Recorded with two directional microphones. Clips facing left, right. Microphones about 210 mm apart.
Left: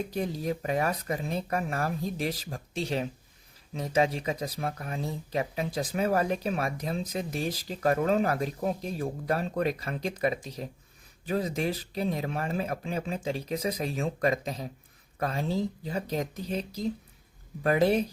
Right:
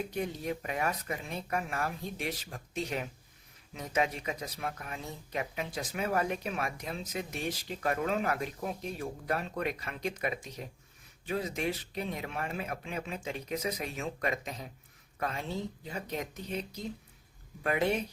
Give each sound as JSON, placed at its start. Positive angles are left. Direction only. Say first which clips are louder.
{"t": 0.1, "sound": "speech", "louder": "left 4 dB", "side_deg": 35}